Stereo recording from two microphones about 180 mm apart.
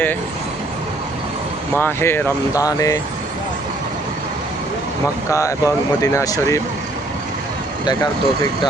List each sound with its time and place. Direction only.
1.7 s speech: 10° left (ahead or behind)
5.3 s speech: 15° left (ahead or behind)